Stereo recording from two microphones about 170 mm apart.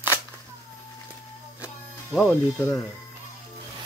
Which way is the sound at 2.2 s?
15° left (ahead or behind).